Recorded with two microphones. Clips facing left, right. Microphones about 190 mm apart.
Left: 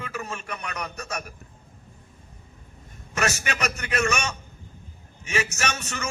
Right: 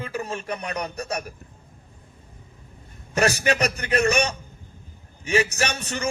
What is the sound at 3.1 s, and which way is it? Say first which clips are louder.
A man's voice: right 6 dB; 35° right (ahead or behind).